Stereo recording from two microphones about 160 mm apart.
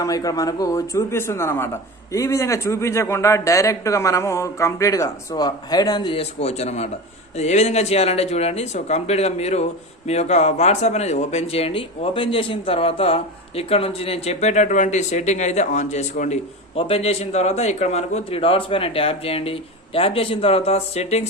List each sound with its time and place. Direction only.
0.0 s a man's voice: 20° left (ahead or behind); by 16.4 s 50° left (ahead or behind)
16.7 s a man's voice: 35° left (ahead or behind)